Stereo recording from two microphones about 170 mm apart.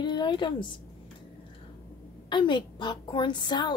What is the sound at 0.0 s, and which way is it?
Speech, 25° left (ahead or behind).